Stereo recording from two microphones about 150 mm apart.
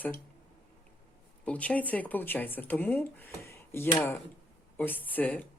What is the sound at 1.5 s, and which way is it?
A woman's voice, 10° left (ahead or behind).